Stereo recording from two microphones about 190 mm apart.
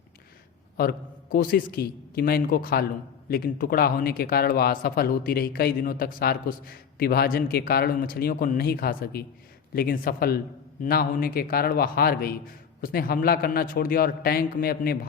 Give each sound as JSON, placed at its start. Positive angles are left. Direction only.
{"t": 0.8, "sound": "a man's voice", "side_deg": 50}